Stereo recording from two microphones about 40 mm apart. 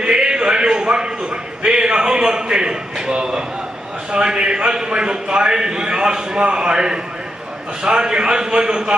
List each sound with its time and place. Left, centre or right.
0.0 s a man's voice: right